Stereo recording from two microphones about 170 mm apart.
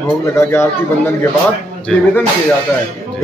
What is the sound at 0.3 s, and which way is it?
Speech, 15° left (ahead or behind).